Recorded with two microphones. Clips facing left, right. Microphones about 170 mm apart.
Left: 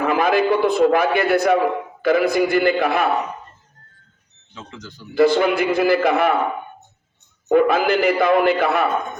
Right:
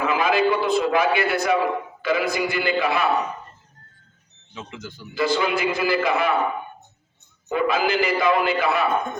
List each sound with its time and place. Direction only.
0.0 s a man's voice: 55° left (ahead or behind)
4.5 s speech: 15° right (ahead or behind)
5.1 s a man's voice: 55° left (ahead or behind)
7.4 s a man's voice: 55° left (ahead or behind)